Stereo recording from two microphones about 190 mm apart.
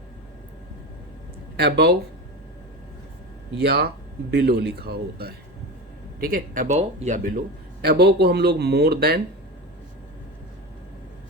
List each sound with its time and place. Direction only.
1.5 s a man's voice: 60° right (ahead or behind)
3.6 s a man's voice: 55° right (ahead or behind)